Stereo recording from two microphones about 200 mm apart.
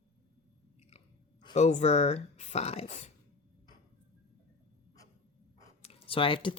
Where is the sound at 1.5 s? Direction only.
35° left (ahead or behind).